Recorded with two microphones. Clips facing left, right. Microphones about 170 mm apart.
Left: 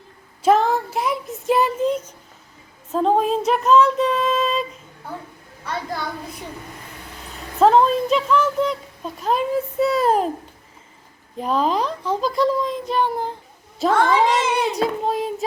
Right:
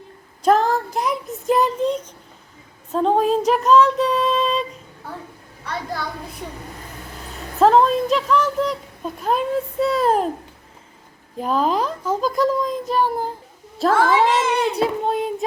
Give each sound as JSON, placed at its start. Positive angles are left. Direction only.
{"t": 0.4, "sound": "a child's voice", "side_deg": 0}
{"t": 2.9, "sound": "a sound", "side_deg": 0}
{"t": 6.4, "sound": "a woman's voice", "side_deg": 0}
{"t": 7.6, "sound": "a woman's voice", "side_deg": 0}
{"t": 11.3, "sound": "a woman's voice", "side_deg": 0}
{"t": 12.2, "sound": "a child's voice", "side_deg": -45}
{"t": 12.8, "sound": "a woman's voice", "side_deg": -5}